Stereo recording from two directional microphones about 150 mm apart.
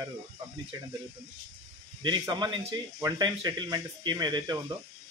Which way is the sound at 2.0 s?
30° right (ahead or behind).